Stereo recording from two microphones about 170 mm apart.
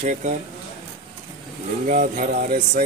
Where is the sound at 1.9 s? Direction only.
55° right (ahead or behind).